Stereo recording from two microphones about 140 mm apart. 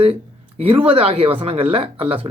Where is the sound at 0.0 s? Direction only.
45° right (ahead or behind).